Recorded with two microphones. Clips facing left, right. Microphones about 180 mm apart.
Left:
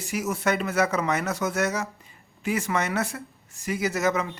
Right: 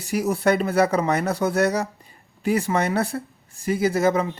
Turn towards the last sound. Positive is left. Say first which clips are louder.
# right 5 dB
turn(degrees=-30)  # may be behind; listen again after turning